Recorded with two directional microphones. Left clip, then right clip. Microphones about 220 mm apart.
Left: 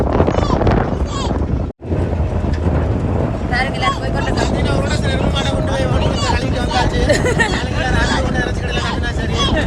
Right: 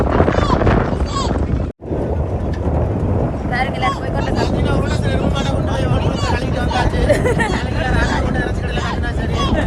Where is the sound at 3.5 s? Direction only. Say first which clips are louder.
Left 1 dB; 35° right (ahead or behind).